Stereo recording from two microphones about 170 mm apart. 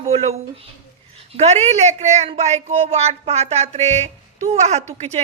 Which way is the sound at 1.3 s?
40° right (ahead or behind).